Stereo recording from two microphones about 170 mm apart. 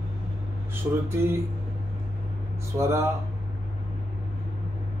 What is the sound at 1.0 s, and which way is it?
Speech, 15° right (ahead or behind).